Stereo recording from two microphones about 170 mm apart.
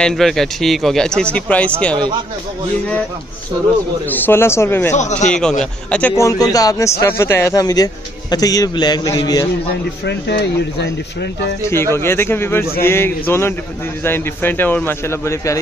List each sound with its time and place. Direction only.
0.0 s speech: centre (ahead or behind)
4.1 s a man's voice: 15° left (ahead or behind)
10.0 s speech: 80° left
11.6 s a man's voice: 15° left (ahead or behind)